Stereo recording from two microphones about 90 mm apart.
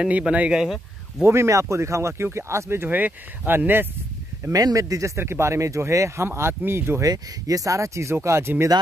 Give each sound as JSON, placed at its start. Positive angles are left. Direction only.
{"t": 0.0, "sound": "speech", "side_deg": -10}
{"t": 1.2, "sound": "speech", "side_deg": -30}
{"t": 4.5, "sound": "speech", "side_deg": -40}
{"t": 7.0, "sound": "speech", "side_deg": -40}